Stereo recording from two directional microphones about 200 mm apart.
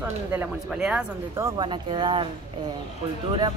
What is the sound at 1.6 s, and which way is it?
Speech, 25° right (ahead or behind).